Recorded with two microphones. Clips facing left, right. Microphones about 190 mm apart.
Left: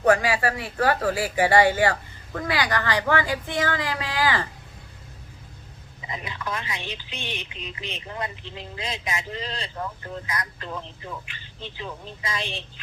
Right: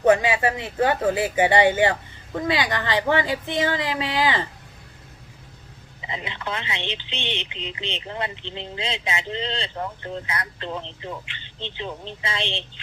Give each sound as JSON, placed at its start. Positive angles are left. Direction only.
{"t": 0.0, "sound": "speech", "side_deg": -20}
{"t": 6.1, "sound": "speech", "side_deg": -25}